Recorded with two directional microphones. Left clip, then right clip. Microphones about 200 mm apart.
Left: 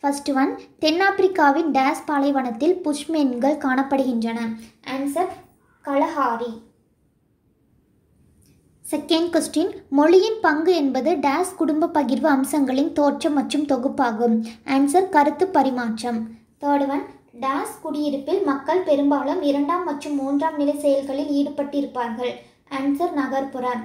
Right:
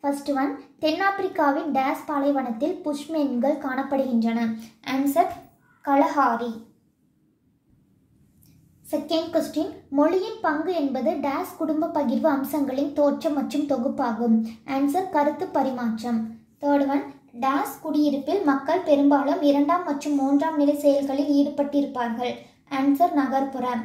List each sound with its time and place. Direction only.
0.0 s a woman's voice: 30° left (ahead or behind)
5.8 s a woman's voice: 10° left (ahead or behind)
9.0 s a woman's voice: 35° left (ahead or behind)
17.4 s a woman's voice: 10° left (ahead or behind)